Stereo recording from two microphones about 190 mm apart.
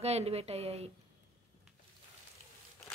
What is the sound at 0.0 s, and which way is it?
Speech, 35° right (ahead or behind).